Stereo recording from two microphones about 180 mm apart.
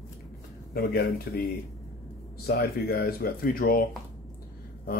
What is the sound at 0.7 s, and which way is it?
Speech, 55° left (ahead or behind).